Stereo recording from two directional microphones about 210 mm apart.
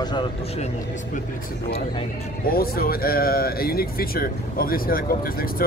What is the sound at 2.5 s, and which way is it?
Speech, 45° left (ahead or behind).